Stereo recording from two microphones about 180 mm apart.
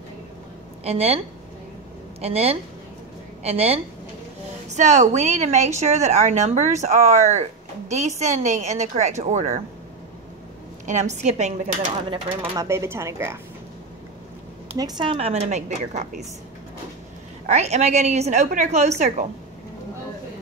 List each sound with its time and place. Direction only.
0.8 s a woman's voice: 35° right (ahead or behind)
2.2 s a woman's voice: 35° right (ahead or behind)
10.9 s a woman's voice: 40° right (ahead or behind)
12.4 s speech: 15° right (ahead or behind)
14.8 s a woman's voice: 25° right (ahead or behind); by 16.3 s 40° right (ahead or behind)
17.5 s a woman's voice: 40° right (ahead or behind)